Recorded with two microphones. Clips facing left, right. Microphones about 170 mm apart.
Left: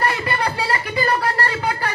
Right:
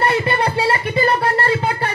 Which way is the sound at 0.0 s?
25° right (ahead or behind).